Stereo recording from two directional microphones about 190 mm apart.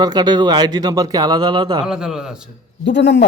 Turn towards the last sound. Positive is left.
turn(degrees=60)  # may be behind; listen again after turning